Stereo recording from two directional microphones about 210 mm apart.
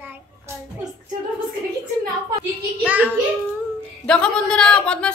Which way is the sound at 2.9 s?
5° right (ahead or behind).